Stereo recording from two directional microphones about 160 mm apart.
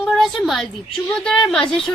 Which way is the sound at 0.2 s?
Centre (ahead or behind).